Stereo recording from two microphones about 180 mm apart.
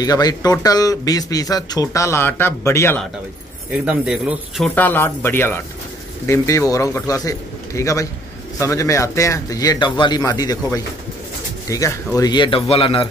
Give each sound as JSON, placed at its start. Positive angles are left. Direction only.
{"t": 0.0, "sound": "speech", "side_deg": 20}
{"t": 3.8, "sound": "speech", "side_deg": -5}
{"t": 4.7, "sound": "a man's voice", "side_deg": 10}